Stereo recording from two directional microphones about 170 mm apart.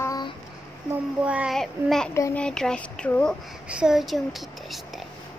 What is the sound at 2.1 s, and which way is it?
Speech, 15° left (ahead or behind).